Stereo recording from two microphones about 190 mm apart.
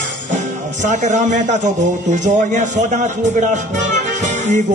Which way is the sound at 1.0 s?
40° right (ahead or behind).